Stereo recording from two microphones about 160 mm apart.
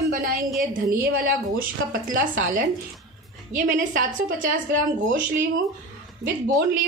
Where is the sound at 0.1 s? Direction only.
65° right (ahead or behind).